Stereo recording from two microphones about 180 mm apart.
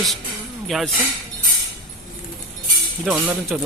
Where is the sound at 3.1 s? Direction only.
10° right (ahead or behind).